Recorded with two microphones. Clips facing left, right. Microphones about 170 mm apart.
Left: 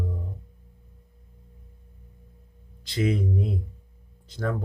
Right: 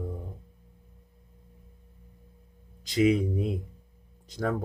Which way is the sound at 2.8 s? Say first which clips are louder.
Right 3 dB; 15° right (ahead or behind).